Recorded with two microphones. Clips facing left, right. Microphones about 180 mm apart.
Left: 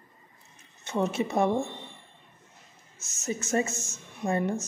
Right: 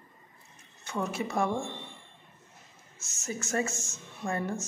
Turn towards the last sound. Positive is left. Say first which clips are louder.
# left 5 dB
turn(degrees=20)  # may be behind; listen again after turning